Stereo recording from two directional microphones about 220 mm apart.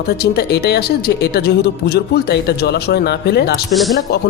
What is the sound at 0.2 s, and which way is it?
A woman's voice, 45° left (ahead or behind).